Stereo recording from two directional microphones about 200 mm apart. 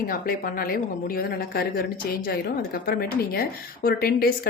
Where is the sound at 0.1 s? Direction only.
45° left (ahead or behind).